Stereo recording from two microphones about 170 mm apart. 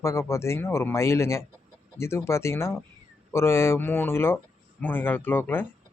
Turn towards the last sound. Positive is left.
turn(degrees=10)  # may be behind; listen again after turning